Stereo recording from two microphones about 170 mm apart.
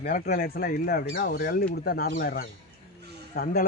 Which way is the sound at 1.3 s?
60° left (ahead or behind).